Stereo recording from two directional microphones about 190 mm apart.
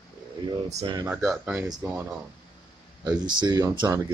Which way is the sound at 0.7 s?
35° right (ahead or behind).